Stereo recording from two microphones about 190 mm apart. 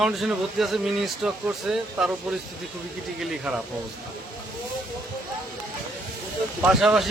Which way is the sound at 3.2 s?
5° right (ahead or behind).